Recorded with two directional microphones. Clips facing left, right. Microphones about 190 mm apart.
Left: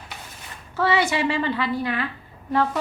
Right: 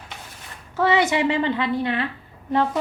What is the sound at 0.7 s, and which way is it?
A woman's voice, 20° right (ahead or behind).